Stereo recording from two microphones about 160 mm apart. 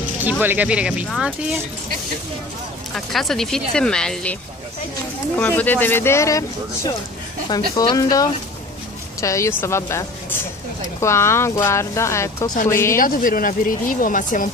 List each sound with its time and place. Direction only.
0.2 s speech: 10° right (ahead or behind)
2.9 s speech: centre (ahead or behind); by 6.4 s 20° left (ahead or behind)
7.7 s speech: 25° left (ahead or behind)
13.0 s speech: 60° left (ahead or behind)